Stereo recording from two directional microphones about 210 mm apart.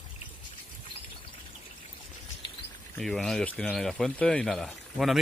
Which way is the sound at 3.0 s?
Centre (ahead or behind).